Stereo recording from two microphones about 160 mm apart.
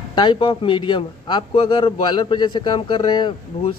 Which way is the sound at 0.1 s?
30° left (ahead or behind).